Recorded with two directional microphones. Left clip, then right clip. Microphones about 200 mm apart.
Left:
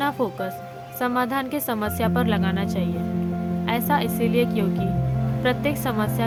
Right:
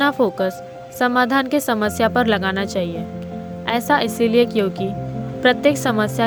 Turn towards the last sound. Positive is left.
turn(degrees=-30)  # may be behind; listen again after turning